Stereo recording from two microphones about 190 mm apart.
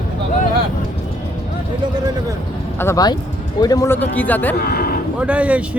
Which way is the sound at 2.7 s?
15° left (ahead or behind).